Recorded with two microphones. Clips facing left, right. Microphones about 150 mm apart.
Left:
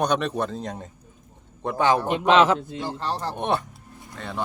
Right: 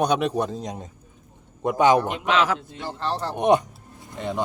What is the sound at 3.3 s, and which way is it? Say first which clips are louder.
A man's voice: right 6 dB; 15° right (ahead or behind).